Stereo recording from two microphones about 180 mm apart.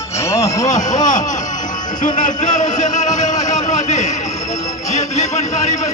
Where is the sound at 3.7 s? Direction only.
40° left (ahead or behind).